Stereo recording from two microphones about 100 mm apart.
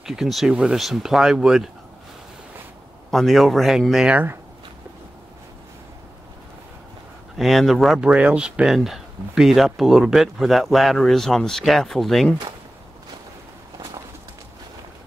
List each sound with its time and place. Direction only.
0.0 s speech: 5° right (ahead or behind)
3.1 s speech: centre (ahead or behind)
4.1 s speech: 20° right (ahead or behind)
7.3 s speech: centre (ahead or behind)